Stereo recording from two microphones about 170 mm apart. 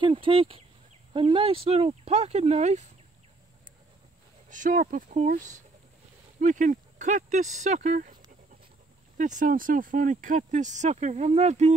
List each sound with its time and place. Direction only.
0.0 s speech: 30° right (ahead or behind)
4.5 s speech: 50° right (ahead or behind)
6.4 s speech: 50° right (ahead or behind)
9.2 s speech: 50° right (ahead or behind)